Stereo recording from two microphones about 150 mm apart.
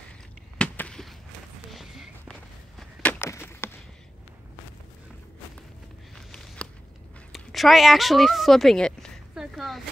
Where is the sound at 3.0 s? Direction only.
15° left (ahead or behind).